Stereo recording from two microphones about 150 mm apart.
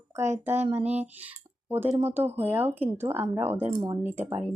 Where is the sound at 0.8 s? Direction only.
45° right (ahead or behind).